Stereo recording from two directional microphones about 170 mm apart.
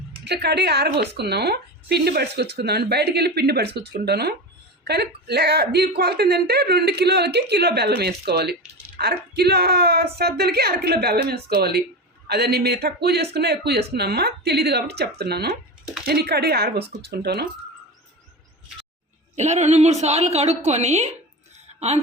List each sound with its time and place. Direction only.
0.3 s speech: 80° right
19.4 s a woman's voice: 40° right (ahead or behind)